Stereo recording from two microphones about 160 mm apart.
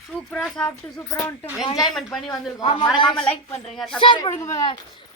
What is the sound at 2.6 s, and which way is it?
Speech, 40° left (ahead or behind).